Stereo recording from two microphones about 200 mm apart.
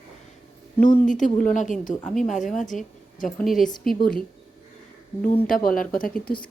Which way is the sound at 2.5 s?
40° left (ahead or behind).